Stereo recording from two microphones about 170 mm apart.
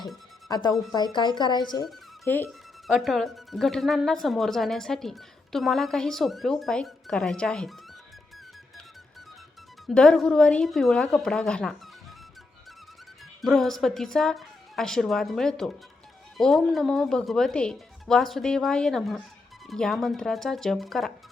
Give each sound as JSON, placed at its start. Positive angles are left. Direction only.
{"t": 0.4, "sound": "speech", "side_deg": 20}
{"t": 2.2, "sound": "speech", "side_deg": 10}
{"t": 2.5, "sound": "speech", "side_deg": 0}
{"t": 9.8, "sound": "speech", "side_deg": 5}
{"t": 13.4, "sound": "speech", "side_deg": 0}